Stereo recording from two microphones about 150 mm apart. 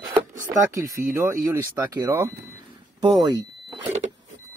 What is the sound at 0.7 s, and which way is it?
Speech, 20° right (ahead or behind).